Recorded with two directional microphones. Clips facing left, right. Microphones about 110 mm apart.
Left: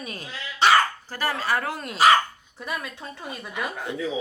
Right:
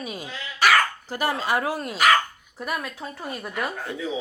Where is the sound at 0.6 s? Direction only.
25° left (ahead or behind).